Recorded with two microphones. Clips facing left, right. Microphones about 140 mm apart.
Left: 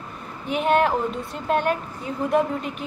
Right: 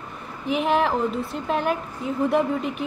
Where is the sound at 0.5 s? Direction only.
Centre (ahead or behind).